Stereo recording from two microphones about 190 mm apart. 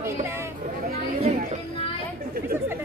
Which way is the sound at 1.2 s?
40° right (ahead or behind).